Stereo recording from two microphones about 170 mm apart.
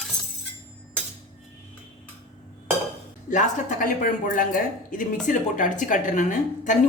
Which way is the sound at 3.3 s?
50° left (ahead or behind).